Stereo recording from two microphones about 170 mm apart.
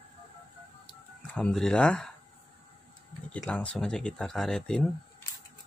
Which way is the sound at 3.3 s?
5° left (ahead or behind).